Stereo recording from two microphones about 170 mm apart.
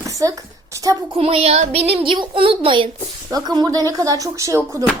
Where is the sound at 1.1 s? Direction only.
35° right (ahead or behind).